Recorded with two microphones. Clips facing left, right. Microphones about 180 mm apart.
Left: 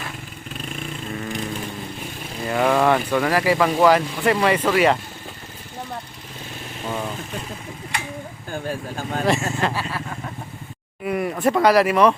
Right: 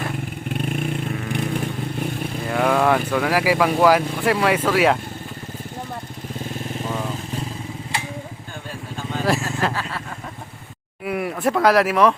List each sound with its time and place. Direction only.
0.0 s vehicle: 55° right (ahead or behind)
2.5 s speech: centre (ahead or behind)
9.2 s vehicle: centre (ahead or behind)
11.0 s a sound: 5° right (ahead or behind)
11.4 s speech: centre (ahead or behind)